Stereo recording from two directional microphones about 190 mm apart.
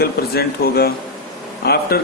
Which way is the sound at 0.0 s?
55° left (ahead or behind).